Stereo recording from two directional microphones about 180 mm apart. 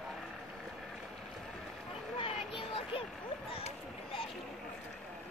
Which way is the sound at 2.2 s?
30° left (ahead or behind).